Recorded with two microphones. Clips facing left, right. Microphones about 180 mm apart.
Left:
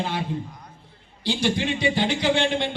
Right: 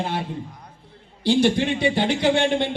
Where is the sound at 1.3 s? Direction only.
55° right (ahead or behind).